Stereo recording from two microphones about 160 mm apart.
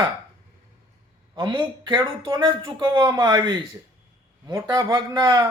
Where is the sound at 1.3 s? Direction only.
30° right (ahead or behind).